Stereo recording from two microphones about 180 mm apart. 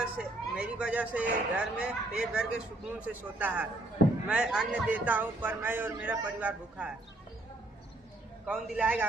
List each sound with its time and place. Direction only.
0.0 s speech: 5° right (ahead or behind)
8.4 s a man's voice: 5° right (ahead or behind)